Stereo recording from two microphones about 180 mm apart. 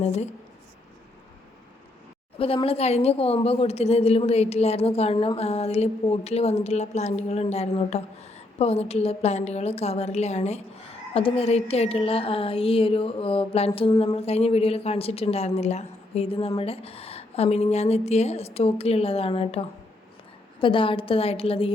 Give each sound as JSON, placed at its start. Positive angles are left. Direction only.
{"t": 0.0, "sound": "a woman's voice", "side_deg": 35}
{"t": 2.4, "sound": "a woman's voice", "side_deg": 30}